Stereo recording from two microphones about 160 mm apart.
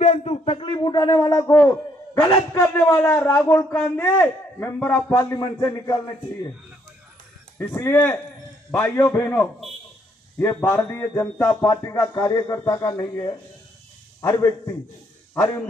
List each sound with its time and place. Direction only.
0.0 s a sound: 40° left (ahead or behind)
2.1 s a man's voice: 25° left (ahead or behind)
7.5 s a man's voice: 15° left (ahead or behind)
11.7 s a man's voice: 20° left (ahead or behind)